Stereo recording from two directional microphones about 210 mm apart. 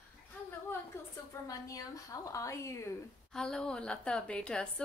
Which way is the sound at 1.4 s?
15° left (ahead or behind).